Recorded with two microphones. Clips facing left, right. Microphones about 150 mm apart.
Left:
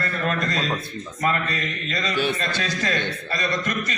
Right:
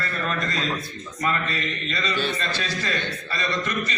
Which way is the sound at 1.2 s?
45° left (ahead or behind).